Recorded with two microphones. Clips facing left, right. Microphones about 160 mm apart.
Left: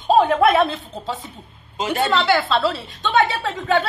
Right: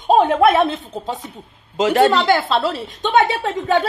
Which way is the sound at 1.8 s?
90° right.